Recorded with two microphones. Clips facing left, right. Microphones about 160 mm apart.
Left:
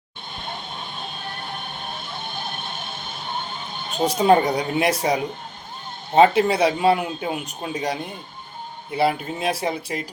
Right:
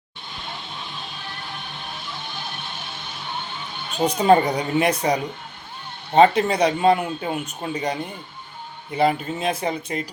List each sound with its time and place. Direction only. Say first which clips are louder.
0.3 s music: left 2 dB; 50° left (ahead or behind)
4.0 s speech: even; 5° left (ahead or behind)
6.1 s speech: even; 5° left (ahead or behind)